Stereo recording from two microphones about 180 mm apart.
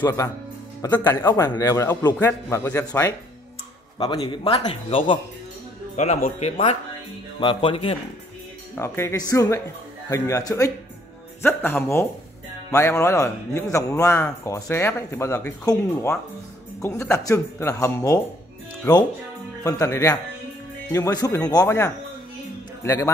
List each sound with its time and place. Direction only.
0.0 s a man's voice: 15° left (ahead or behind)
5.9 s speech: 40° left (ahead or behind)
7.3 s speech: 30° left (ahead or behind)
8.7 s speech: 15° left (ahead or behind)
19.6 s a man's voice: 20° left (ahead or behind)